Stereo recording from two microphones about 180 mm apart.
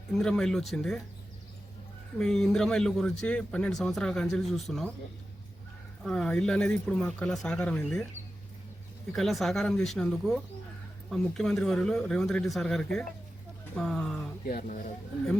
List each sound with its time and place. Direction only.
0.1 s speech: centre (ahead or behind)
2.1 s speech: centre (ahead or behind)
6.0 s speech: centre (ahead or behind)
9.1 s speech: centre (ahead or behind)
13.7 s a sound: centre (ahead or behind)
14.4 s speech: 50° left (ahead or behind)